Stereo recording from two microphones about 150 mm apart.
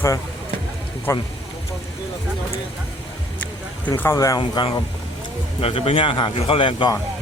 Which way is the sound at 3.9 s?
15° left (ahead or behind).